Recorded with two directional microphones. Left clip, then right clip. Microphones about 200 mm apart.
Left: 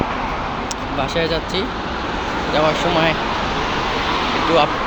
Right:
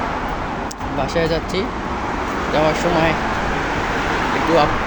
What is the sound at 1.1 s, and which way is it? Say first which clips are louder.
Speech: right 1 dB; 20° right (ahead or behind).